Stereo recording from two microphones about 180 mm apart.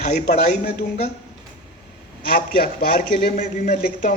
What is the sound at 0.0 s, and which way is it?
Speech, 40° left (ahead or behind).